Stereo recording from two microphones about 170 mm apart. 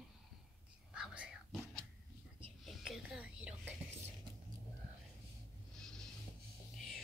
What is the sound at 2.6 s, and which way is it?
Whispering, centre (ahead or behind).